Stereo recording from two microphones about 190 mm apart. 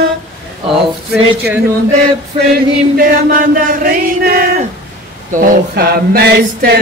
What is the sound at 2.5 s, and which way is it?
Chant, 50° right (ahead or behind).